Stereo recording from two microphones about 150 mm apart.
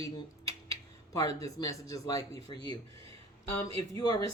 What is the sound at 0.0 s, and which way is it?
Speech, 20° left (ahead or behind).